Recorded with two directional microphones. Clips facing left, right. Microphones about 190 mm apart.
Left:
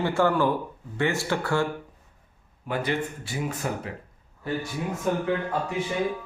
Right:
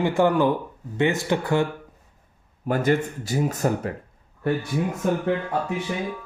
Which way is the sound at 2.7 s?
45° right (ahead or behind).